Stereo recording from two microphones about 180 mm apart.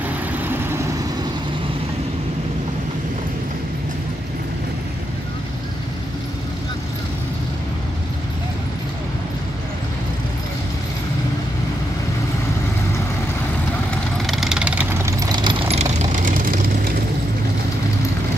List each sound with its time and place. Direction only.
0.5 s vehicle: 15° right (ahead or behind)
13.8 s vehicle: centre (ahead or behind); by 15.5 s 20° right (ahead or behind)
15.7 s vehicle: 40° right (ahead or behind)